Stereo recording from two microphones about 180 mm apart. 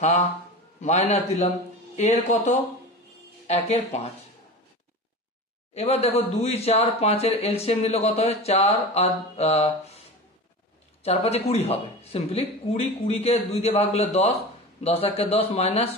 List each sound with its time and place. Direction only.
0.7 s speech: 40° left (ahead or behind)
5.8 s speech: 35° left (ahead or behind)